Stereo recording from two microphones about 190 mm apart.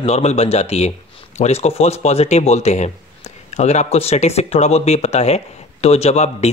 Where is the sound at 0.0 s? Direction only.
35° left (ahead or behind).